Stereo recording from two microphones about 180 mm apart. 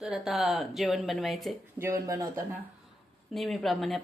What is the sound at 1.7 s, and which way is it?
Speech, 15° right (ahead or behind).